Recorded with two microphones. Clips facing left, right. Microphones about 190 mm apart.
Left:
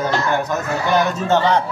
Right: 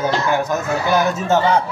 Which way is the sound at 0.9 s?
5° right (ahead or behind).